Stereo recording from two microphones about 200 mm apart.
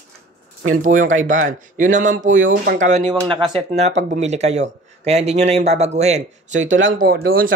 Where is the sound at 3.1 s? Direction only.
25° right (ahead or behind).